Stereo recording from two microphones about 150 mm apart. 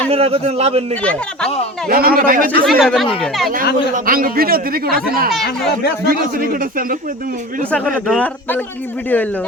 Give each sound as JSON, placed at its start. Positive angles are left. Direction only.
{"t": 0.1, "sound": "a man's voice", "side_deg": -40}
{"t": 1.9, "sound": "speech", "side_deg": -85}
{"t": 2.6, "sound": "a man's voice", "side_deg": 0}
{"t": 3.9, "sound": "speech", "side_deg": -70}
{"t": 7.7, "sound": "a man's voice", "side_deg": 5}